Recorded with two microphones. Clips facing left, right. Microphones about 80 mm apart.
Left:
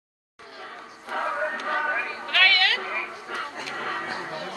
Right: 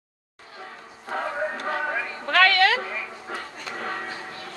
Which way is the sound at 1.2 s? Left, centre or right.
Centre.